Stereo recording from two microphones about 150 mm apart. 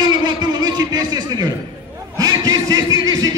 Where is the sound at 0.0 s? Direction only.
30° right (ahead or behind).